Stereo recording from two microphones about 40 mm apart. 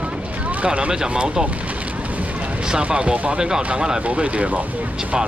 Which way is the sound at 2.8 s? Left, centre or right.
Right.